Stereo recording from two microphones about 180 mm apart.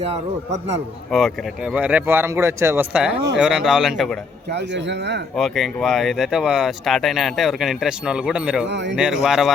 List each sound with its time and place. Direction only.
0.0 s a man's voice: 35° right (ahead or behind)
1.1 s speech: centre (ahead or behind)
4.5 s speech: 75° right (ahead or behind)
5.4 s speech: centre (ahead or behind)
8.6 s speech: 80° right
9.0 s speech: 5° right (ahead or behind)